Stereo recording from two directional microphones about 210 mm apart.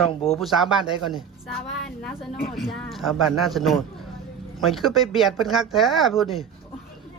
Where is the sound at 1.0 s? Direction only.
Centre (ahead or behind).